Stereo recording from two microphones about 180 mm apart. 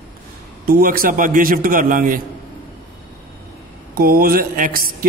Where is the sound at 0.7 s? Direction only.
55° right (ahead or behind).